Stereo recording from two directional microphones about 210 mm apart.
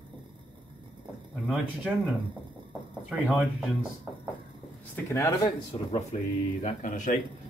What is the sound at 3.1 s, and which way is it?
Speech, centre (ahead or behind).